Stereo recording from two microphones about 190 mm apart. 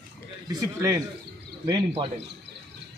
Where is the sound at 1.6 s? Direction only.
25° right (ahead or behind).